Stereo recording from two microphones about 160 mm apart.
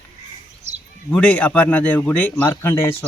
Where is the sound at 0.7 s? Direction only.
45° right (ahead or behind).